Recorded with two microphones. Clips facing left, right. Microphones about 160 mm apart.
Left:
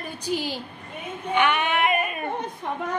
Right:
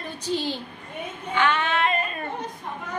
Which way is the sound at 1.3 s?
15° left (ahead or behind).